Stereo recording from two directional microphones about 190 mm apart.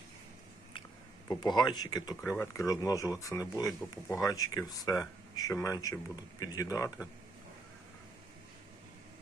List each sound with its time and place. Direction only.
1.3 s speech: 20° left (ahead or behind)